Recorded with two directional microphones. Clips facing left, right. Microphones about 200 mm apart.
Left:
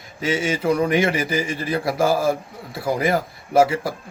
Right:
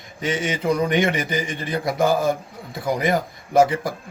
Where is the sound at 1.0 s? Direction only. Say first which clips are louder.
Left 1 dB; 30° left (ahead or behind).